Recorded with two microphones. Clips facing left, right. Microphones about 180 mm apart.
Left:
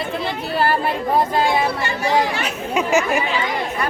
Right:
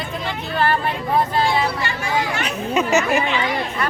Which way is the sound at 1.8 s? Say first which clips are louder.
Left 4 dB; 35° left (ahead or behind).